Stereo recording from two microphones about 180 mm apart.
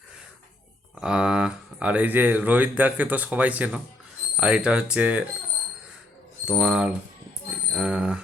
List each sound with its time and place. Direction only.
0.9 s speech: 5° right (ahead or behind)
6.5 s speech: 5° right (ahead or behind)